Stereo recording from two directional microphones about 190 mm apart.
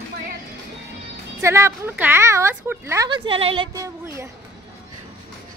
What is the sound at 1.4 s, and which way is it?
Speech, 15° right (ahead or behind).